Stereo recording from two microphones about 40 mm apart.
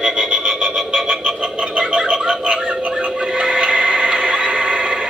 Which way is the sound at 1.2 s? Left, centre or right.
Right.